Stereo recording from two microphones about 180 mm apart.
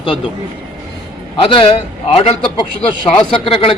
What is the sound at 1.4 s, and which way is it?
A man's voice, 30° left (ahead or behind).